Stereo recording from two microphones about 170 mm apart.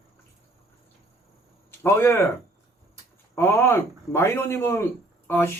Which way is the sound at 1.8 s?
15° left (ahead or behind).